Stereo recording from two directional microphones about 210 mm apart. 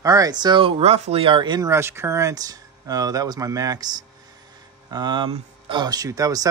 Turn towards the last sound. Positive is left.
turn(degrees=-15)  # may be behind; listen again after turning